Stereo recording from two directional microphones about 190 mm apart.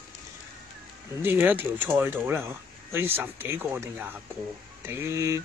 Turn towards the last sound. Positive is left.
turn(degrees=-15)  # may be behind; listen again after turning